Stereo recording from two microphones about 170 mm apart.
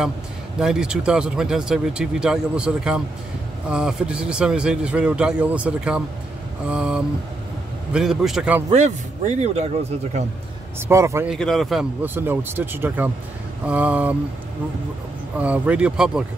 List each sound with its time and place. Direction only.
0.6 s speech: 5° right (ahead or behind)
8.6 s speech: 45° right (ahead or behind)
10.9 s speech: 15° right (ahead or behind)
11.2 s speech: centre (ahead or behind)
15.3 s speech: 10° right (ahead or behind)